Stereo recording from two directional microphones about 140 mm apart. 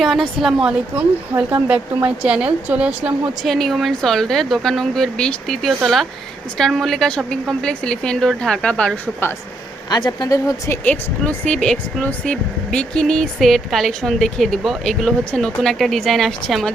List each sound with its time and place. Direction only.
0.0 s speech: centre (ahead or behind)
9.9 s speech: 30° left (ahead or behind)
10.8 s speech: 10° left (ahead or behind)